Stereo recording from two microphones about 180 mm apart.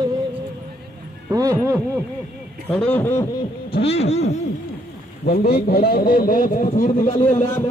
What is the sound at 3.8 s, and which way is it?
Speech, 35° left (ahead or behind).